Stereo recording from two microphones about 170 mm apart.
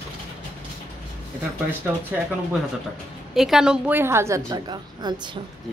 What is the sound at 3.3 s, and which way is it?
A woman's voice, centre (ahead or behind).